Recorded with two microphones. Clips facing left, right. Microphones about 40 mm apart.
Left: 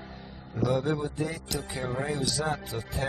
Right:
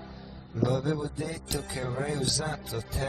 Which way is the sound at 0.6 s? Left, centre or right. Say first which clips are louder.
Left 1 dB; left.